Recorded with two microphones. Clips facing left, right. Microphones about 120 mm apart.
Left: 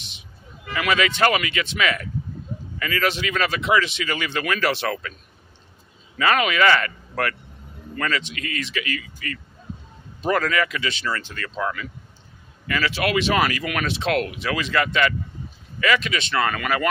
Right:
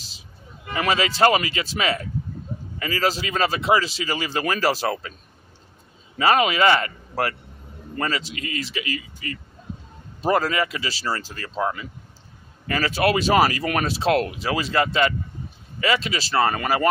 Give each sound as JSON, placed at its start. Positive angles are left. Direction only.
{"t": 0.7, "sound": "speech", "side_deg": -30}
{"t": 6.1, "sound": "speech", "side_deg": -25}